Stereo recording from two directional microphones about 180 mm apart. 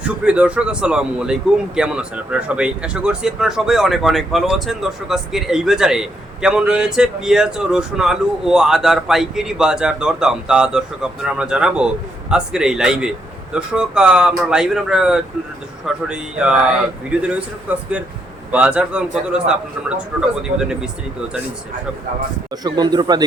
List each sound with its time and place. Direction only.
0.0 s a man's voice: 5° right (ahead or behind)
22.6 s speech: 25° right (ahead or behind)